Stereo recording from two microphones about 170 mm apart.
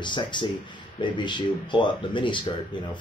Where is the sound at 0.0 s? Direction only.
25° left (ahead or behind).